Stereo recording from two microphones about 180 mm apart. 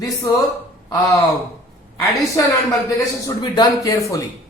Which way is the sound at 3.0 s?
20° left (ahead or behind).